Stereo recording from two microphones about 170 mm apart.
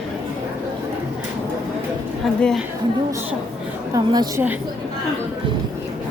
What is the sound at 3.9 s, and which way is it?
Speech, 25° right (ahead or behind).